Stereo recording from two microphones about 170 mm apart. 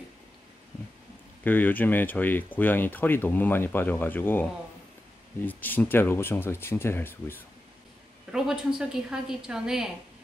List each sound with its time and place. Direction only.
1.4 s speech: 10° left (ahead or behind)
8.3 s a woman's voice: 5° right (ahead or behind)